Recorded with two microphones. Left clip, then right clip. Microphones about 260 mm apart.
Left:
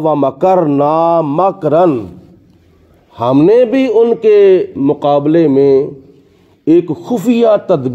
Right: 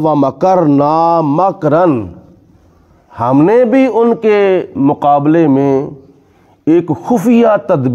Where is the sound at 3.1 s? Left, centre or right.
Right.